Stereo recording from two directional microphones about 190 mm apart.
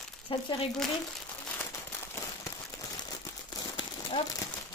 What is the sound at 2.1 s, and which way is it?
Crumpling, 15° left (ahead or behind).